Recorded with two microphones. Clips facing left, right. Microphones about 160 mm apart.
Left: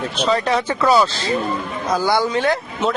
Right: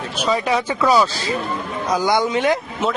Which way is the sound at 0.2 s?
10° right (ahead or behind).